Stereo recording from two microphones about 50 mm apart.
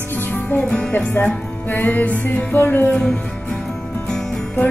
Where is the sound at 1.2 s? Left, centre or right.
Left.